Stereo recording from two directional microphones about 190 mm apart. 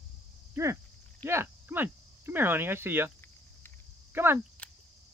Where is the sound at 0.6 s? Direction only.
15° right (ahead or behind).